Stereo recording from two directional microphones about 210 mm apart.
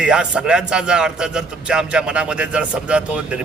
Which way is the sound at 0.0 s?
5° right (ahead or behind).